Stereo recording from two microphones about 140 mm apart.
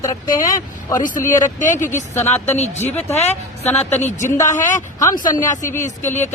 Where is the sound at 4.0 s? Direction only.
55° left (ahead or behind).